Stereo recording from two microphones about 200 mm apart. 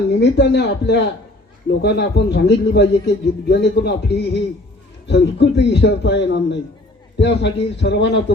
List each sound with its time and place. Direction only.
0.1 s a man's voice: 60° left (ahead or behind)